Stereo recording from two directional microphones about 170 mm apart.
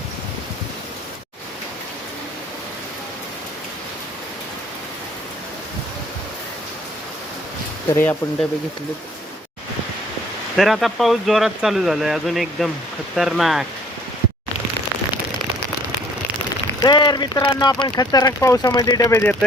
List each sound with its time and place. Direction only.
7.9 s speech: 10° left (ahead or behind)
10.6 s speech: centre (ahead or behind)
16.8 s speech: 25° left (ahead or behind)